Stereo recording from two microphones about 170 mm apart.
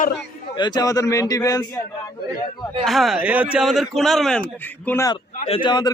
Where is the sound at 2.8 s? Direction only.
Centre (ahead or behind).